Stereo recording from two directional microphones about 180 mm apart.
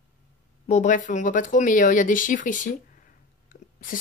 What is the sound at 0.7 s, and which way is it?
Speech, 40° left (ahead or behind).